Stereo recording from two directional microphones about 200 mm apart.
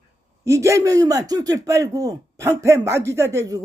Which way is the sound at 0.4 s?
15° right (ahead or behind).